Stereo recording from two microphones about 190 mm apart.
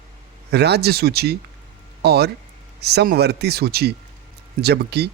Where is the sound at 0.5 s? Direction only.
60° right (ahead or behind).